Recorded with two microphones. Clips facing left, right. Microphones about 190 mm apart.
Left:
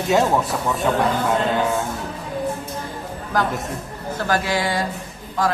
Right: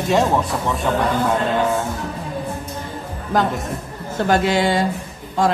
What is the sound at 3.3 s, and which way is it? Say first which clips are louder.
A woman's voice: right 3 dB; 25° right (ahead or behind).